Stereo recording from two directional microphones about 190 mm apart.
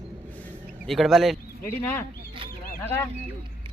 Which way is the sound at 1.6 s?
10° left (ahead or behind).